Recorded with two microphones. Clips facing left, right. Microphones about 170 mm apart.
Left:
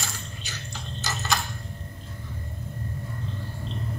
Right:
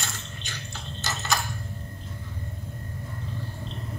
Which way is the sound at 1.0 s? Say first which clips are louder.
Left 1 dB; 20° right (ahead or behind).